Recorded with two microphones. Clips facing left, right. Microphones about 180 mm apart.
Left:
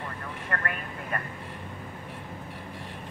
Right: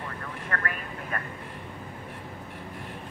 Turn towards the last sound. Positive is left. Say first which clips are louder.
# left 1 dB
turn(degrees=0)  # may be behind; listen again after turning